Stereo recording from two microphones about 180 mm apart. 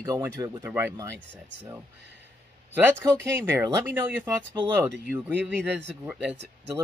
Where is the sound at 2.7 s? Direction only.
10° right (ahead or behind).